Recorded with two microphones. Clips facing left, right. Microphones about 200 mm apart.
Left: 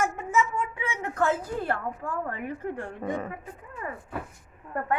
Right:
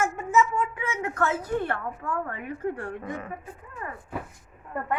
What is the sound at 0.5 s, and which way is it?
A woman's voice, 30° left (ahead or behind).